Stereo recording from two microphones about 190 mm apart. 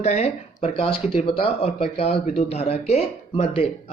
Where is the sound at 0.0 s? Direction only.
35° left (ahead or behind).